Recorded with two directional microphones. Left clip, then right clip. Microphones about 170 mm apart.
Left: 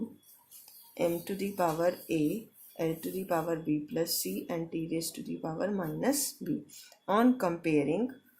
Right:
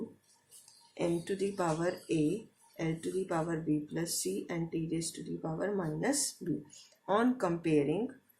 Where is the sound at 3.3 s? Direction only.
30° left (ahead or behind).